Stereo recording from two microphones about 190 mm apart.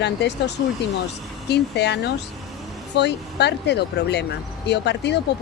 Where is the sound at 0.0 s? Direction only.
65° left (ahead or behind).